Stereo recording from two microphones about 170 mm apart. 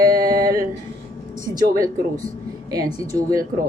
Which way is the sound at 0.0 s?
20° right (ahead or behind).